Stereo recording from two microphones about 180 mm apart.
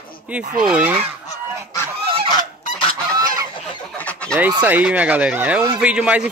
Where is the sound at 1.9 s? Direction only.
30° right (ahead or behind).